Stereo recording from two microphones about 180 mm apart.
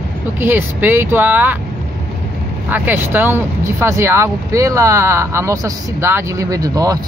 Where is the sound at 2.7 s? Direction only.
10° right (ahead or behind).